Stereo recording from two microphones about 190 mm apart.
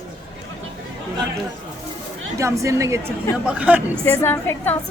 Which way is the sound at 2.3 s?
15° right (ahead or behind).